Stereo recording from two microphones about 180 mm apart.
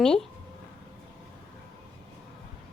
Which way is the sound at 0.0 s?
5° left (ahead or behind).